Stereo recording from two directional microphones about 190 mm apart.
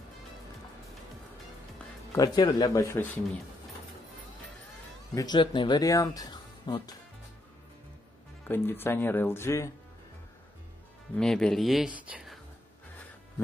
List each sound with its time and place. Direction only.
2.1 s speech: 20° left (ahead or behind)
5.1 s speech: 20° left (ahead or behind)
8.5 s speech: 10° left (ahead or behind)
11.1 s speech: 5° left (ahead or behind)